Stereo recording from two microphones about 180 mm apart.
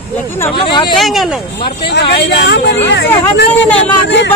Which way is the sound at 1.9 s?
70° left (ahead or behind).